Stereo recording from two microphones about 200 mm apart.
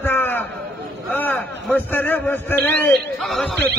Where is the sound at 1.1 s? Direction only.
10° left (ahead or behind).